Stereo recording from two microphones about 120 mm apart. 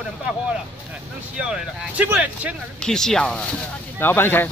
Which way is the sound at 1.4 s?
5° right (ahead or behind).